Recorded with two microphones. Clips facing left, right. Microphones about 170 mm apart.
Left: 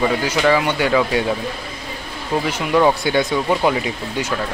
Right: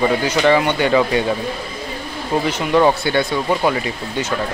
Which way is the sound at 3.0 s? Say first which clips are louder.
Even; 15° left (ahead or behind).